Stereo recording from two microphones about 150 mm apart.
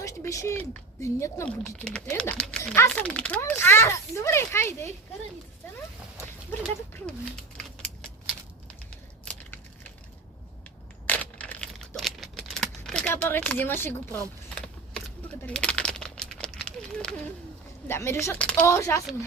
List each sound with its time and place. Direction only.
0.0 s speech: 20° left (ahead or behind)
1.5 s speech: 5° left (ahead or behind)
6.5 s speech: 10° left (ahead or behind)
7.5 s typing: 5° left (ahead or behind)
11.0 s crumpling: 10° left (ahead or behind)
15.4 s crumpling: 10° left (ahead or behind)
17.8 s speech: 15° left (ahead or behind)